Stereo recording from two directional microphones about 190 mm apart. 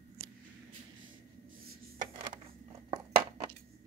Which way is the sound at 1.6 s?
40° right (ahead or behind).